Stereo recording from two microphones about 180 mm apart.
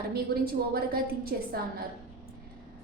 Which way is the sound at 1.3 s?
60° right (ahead or behind).